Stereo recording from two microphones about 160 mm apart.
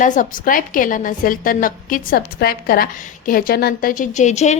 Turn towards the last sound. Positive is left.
turn(degrees=45)  # may be behind; listen again after turning